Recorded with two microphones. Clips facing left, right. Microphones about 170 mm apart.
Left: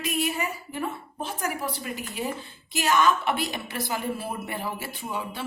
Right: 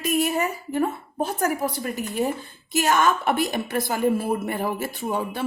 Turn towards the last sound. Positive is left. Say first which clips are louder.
# right 6 dB
turn(degrees=-50)  # may be behind; listen again after turning